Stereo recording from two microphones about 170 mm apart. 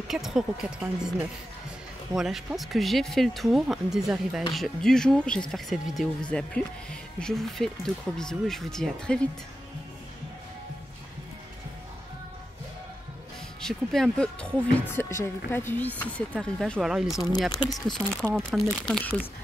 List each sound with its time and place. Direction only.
0.1 s speech: centre (ahead or behind)
2.1 s speech: centre (ahead or behind)
13.6 s speech: 5° left (ahead or behind)
17.6 s speech: 25° left (ahead or behind)
17.9 s speech: centre (ahead or behind)